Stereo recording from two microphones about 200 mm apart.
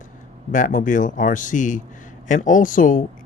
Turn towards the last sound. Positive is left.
turn(degrees=40)  # may be behind; listen again after turning